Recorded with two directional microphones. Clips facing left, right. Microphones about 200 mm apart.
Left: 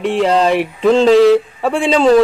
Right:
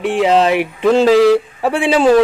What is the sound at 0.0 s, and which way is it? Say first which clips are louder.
Speech: right 1 dB; 5° right (ahead or behind).